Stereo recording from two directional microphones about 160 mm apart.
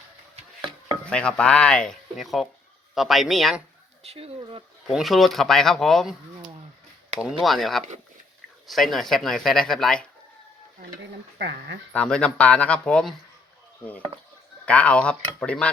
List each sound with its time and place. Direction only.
0.3 s a sound: 35° right (ahead or behind)
1.0 s speech: 5° left (ahead or behind)
4.0 s speech: 40° right (ahead or behind)
4.9 s speech: centre (ahead or behind)
7.2 s speech: centre (ahead or behind)
11.3 s speech: 90° right
11.9 s speech: 5° left (ahead or behind)
14.6 s speech: 10° left (ahead or behind)